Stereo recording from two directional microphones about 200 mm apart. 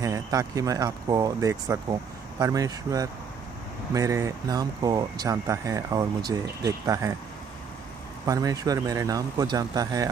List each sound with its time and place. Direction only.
0.0 s speech: 15° right (ahead or behind)
8.3 s speech: 15° right (ahead or behind)